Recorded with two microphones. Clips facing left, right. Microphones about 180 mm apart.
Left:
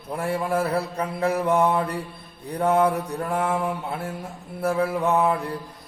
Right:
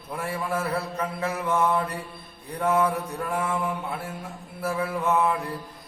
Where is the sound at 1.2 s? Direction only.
35° left (ahead or behind).